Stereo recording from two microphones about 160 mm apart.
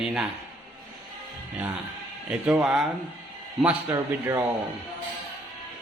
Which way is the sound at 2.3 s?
5° right (ahead or behind).